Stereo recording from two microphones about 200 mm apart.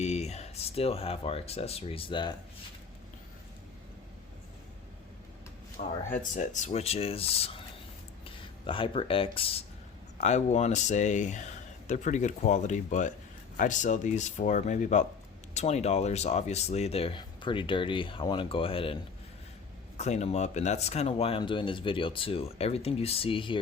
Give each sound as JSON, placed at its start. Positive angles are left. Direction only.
{"t": 0.0, "sound": "speech", "side_deg": 35}
{"t": 6.1, "sound": "speech", "side_deg": 40}
{"t": 20.0, "sound": "speech", "side_deg": 35}